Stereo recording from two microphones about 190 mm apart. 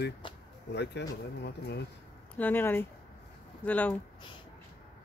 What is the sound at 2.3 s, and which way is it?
Speech, 10° left (ahead or behind).